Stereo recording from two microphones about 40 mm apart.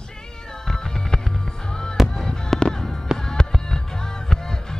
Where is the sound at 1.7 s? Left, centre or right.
Centre.